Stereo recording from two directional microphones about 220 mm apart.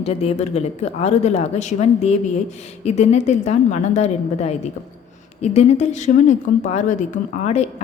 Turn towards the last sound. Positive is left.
turn(degrees=30)  # may be behind; listen again after turning